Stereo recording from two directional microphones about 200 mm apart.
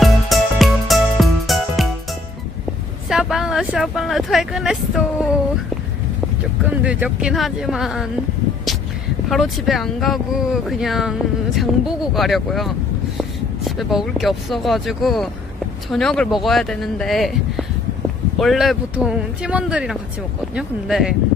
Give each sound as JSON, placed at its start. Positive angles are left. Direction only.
{"t": 0.0, "sound": "music", "side_deg": 0}
{"t": 3.1, "sound": "speech", "side_deg": 0}
{"t": 6.6, "sound": "speech", "side_deg": -5}
{"t": 9.3, "sound": "speech", "side_deg": 0}